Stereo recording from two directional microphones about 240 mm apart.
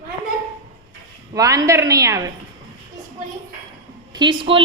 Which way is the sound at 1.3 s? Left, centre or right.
Centre.